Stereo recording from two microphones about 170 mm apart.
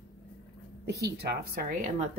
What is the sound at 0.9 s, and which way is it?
Speech, 75° right (ahead or behind).